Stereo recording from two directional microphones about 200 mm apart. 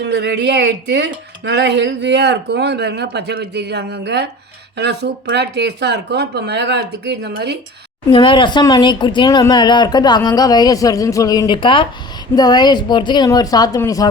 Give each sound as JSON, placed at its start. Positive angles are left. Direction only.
{"t": 0.0, "sound": "speech", "side_deg": -60}
{"t": 8.1, "sound": "speech", "side_deg": 25}